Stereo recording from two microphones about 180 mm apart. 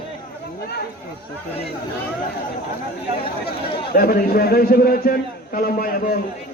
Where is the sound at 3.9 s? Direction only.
55° left (ahead or behind).